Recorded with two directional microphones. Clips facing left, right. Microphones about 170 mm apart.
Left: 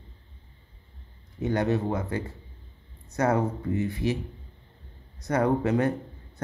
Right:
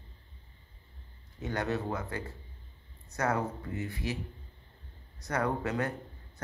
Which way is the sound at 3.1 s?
20° left (ahead or behind).